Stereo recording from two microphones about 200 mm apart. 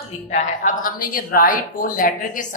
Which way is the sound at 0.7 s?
40° left (ahead or behind).